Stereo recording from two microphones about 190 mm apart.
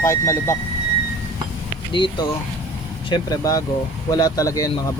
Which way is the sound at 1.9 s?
25° left (ahead or behind).